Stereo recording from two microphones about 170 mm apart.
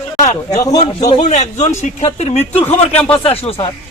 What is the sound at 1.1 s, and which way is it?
A man's voice, 40° left (ahead or behind).